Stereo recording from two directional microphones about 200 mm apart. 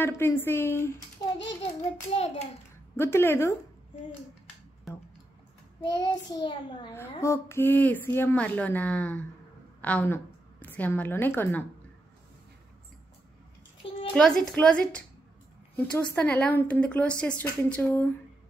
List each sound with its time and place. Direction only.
0.0 s a woman's voice: 10° left (ahead or behind)
1.2 s a sound: 20° left (ahead or behind)
2.0 s a child's voice: 30° left (ahead or behind)
3.0 s a woman's voice: 10° left (ahead or behind)
4.9 s music: centre (ahead or behind)
5.8 s child singing: 20° left (ahead or behind)
6.9 s a woman's voice: 15° left (ahead or behind)
14.1 s a woman's voice: 5° left (ahead or behind)